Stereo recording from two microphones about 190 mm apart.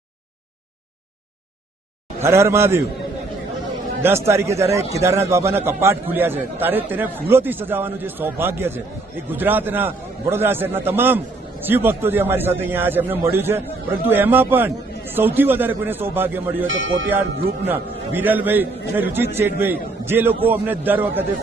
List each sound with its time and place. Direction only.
2.2 s a man's voice: 15° right (ahead or behind)
4.0 s a man's voice: 15° right (ahead or behind)
16.6 s speech: 90° right
17.7 s a man's voice: 10° right (ahead or behind)